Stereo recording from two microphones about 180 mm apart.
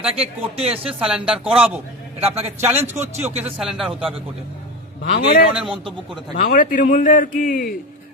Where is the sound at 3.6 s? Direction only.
5° right (ahead or behind).